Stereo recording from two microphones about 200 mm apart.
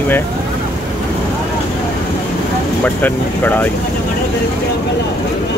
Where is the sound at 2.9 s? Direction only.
10° left (ahead or behind).